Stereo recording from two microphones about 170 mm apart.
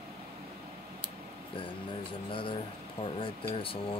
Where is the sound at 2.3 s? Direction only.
30° left (ahead or behind).